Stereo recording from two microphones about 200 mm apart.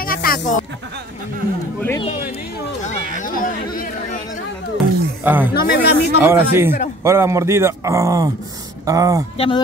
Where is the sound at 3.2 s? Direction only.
40° left (ahead or behind).